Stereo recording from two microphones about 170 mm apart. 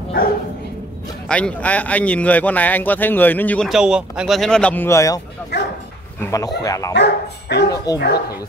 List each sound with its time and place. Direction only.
1.3 s speech: 5° left (ahead or behind)
3.6 s speech: 5° right (ahead or behind); by 5.2 s 20° left (ahead or behind)
5.5 s dog: 80° left
6.3 s speech: 20° left (ahead or behind)
6.9 s speech: 80° left
7.7 s speech: 20° left (ahead or behind)